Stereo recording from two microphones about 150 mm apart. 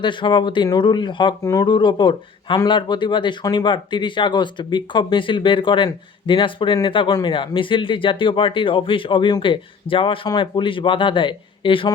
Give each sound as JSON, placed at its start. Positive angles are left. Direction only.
{"t": 0.0, "sound": "speech", "side_deg": 30}